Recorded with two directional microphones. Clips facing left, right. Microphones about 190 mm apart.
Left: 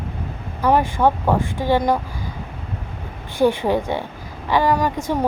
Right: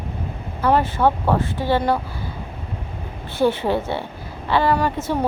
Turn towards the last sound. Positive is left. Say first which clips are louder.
# left 1 dB
turn(degrees=15)  # may be behind; listen again after turning